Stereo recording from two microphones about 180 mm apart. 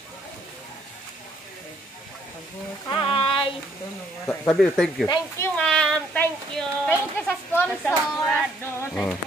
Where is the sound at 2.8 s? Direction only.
30° left (ahead or behind).